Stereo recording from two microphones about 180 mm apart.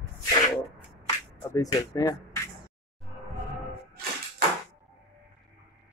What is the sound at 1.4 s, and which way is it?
Speech, 15° left (ahead or behind).